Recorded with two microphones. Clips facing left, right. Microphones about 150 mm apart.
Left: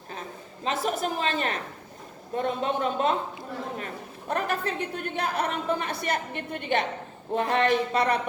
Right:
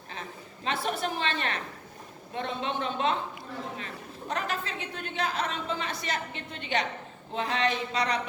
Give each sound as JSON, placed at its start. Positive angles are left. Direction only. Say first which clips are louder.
{"t": 0.1, "sound": "a sound", "louder": "left 3 dB", "side_deg": 40}
{"t": 2.3, "sound": "speech", "louder": "left 5 dB", "side_deg": 45}
{"t": 4.3, "sound": "speech", "louder": "left 5 dB", "side_deg": 50}